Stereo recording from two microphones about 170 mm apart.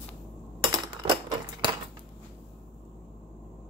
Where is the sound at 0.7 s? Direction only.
25° right (ahead or behind).